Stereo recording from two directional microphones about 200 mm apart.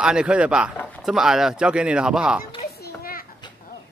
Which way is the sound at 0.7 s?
5° left (ahead or behind).